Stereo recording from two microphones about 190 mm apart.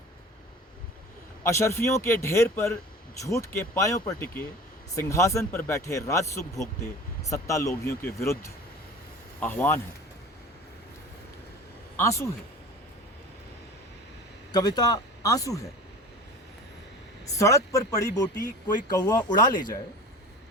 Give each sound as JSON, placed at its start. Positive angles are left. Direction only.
{"t": 1.5, "sound": "speech", "side_deg": 15}
{"t": 11.9, "sound": "speech", "side_deg": 15}
{"t": 14.5, "sound": "speech", "side_deg": 20}
{"t": 17.3, "sound": "speech", "side_deg": 15}